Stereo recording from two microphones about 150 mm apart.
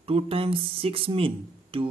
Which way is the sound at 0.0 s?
40° right (ahead or behind).